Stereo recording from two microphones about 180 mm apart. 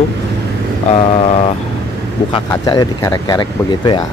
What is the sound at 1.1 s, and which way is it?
Vehicle, 30° left (ahead or behind).